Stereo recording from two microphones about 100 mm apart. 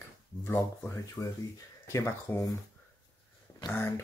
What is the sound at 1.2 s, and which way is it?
Speech, 35° left (ahead or behind).